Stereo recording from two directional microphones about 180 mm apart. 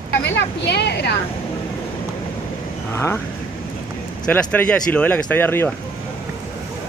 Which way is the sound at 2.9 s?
15° left (ahead or behind).